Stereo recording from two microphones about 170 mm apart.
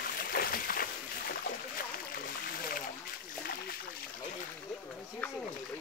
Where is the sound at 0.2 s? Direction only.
60° left (ahead or behind).